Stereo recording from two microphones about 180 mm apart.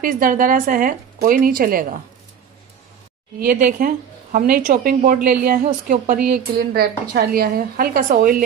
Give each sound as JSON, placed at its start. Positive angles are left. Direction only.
{"t": 0.0, "sound": "speech", "side_deg": -50}
{"t": 3.3, "sound": "speech", "side_deg": -50}